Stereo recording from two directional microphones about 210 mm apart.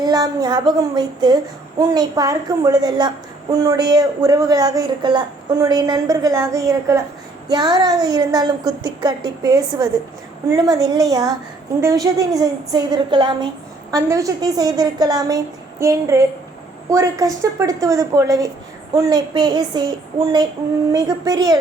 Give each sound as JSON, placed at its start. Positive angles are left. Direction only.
{"t": 0.0, "sound": "speech", "side_deg": -20}